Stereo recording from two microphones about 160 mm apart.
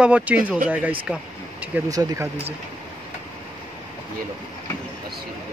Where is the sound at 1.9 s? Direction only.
20° right (ahead or behind).